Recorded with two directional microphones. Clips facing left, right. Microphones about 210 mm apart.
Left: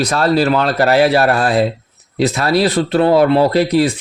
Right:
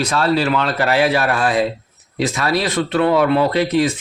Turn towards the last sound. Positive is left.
turn(degrees=35)  # may be behind; listen again after turning